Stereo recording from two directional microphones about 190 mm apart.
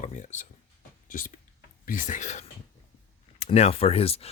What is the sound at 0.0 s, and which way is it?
Speech, 40° left (ahead or behind).